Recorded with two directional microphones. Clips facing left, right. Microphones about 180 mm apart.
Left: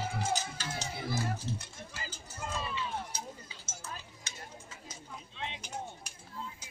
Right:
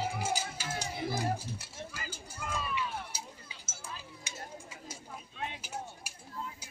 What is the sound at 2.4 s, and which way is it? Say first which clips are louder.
Run: even; 30° left (ahead or behind).